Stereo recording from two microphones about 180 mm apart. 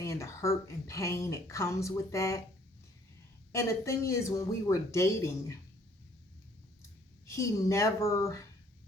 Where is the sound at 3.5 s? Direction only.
15° left (ahead or behind).